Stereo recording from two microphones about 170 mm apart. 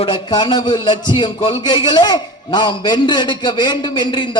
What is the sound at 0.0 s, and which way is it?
A man's voice, 25° left (ahead or behind).